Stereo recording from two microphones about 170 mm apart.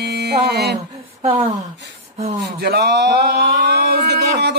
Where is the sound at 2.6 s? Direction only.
70° right (ahead or behind).